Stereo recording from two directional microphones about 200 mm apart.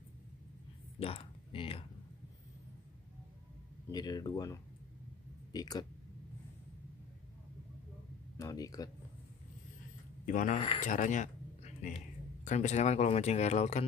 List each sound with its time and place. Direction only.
0.9 s speech: 30° left (ahead or behind)
3.9 s speech: 20° left (ahead or behind)
8.4 s speech: 15° left (ahead or behind)
10.2 s speech: 40° left (ahead or behind)